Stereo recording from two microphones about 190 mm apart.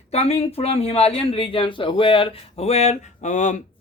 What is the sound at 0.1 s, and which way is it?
A man's voice, 30° left (ahead or behind).